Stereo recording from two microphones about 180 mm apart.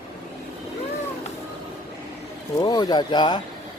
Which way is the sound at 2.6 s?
20° left (ahead or behind).